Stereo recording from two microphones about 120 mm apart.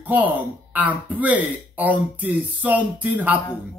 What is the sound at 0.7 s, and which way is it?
Speech, 15° right (ahead or behind).